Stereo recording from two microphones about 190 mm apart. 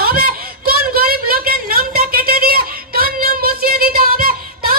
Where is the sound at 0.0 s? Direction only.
50° right (ahead or behind).